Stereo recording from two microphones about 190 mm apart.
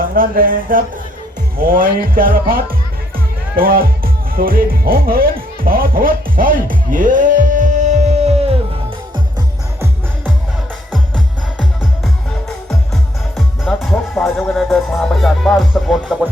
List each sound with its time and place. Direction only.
0.1 s speech: 50° right (ahead or behind)
10.9 s music: 5° left (ahead or behind)
12.6 s music: centre (ahead or behind)